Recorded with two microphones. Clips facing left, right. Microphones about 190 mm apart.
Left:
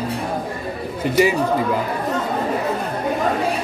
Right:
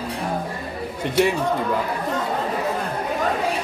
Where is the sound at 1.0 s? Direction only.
5° left (ahead or behind).